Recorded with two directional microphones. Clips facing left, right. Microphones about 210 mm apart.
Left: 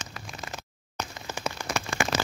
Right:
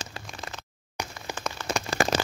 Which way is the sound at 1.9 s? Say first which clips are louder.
Right 5 dB; 35° right (ahead or behind).